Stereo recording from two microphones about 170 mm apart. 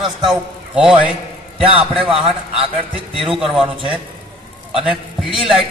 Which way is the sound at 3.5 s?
30° right (ahead or behind).